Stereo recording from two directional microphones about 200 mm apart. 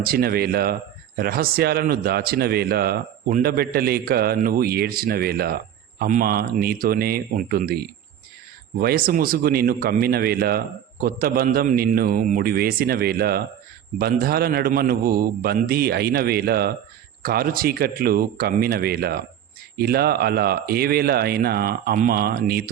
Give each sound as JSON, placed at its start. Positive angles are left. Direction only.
{"t": 0.0, "sound": "speech", "side_deg": -50}